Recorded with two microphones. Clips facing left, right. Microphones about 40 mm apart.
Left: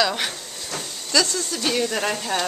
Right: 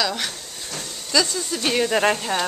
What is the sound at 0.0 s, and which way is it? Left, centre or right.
Hiss, centre.